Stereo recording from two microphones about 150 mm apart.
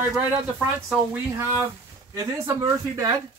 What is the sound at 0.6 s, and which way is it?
Speech, 10° right (ahead or behind).